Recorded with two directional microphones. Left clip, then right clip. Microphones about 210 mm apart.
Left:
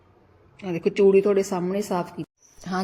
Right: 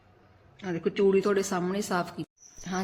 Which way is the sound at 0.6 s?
25° right (ahead or behind).